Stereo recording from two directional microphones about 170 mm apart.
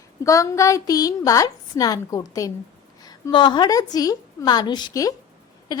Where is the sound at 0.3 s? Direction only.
20° left (ahead or behind).